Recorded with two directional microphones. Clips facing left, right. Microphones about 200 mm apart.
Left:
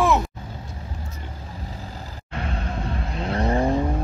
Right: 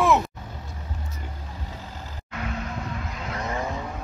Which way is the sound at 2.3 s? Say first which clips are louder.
Left 2 dB; 30° left (ahead or behind).